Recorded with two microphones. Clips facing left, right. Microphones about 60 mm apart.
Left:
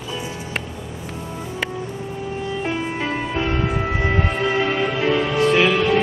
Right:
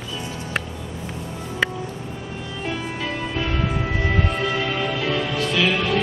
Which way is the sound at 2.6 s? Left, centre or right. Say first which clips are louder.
Left 1 dB; left.